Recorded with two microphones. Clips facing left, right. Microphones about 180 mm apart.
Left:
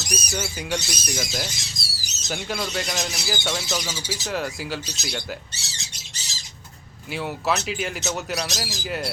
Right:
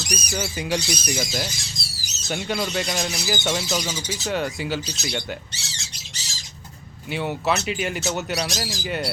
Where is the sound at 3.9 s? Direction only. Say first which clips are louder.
Right 2 dB; 5° left (ahead or behind).